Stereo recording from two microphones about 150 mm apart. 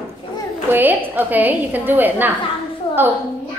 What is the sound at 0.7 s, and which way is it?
A woman's voice, 15° right (ahead or behind).